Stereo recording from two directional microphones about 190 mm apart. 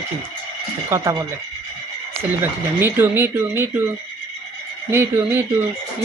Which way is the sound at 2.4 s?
10° right (ahead or behind).